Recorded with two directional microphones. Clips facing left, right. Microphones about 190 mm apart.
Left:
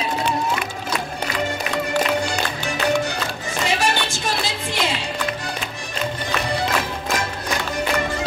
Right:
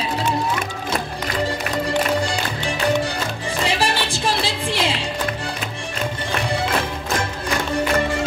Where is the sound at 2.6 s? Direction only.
30° right (ahead or behind).